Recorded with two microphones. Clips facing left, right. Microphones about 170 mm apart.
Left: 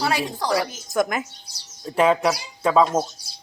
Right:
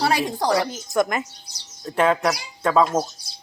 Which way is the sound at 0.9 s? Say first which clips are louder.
Right 1 dB; centre (ahead or behind).